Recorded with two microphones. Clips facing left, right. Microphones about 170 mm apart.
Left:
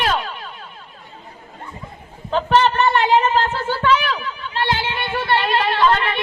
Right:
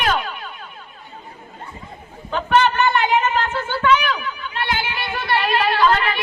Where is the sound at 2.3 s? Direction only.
30° left (ahead or behind).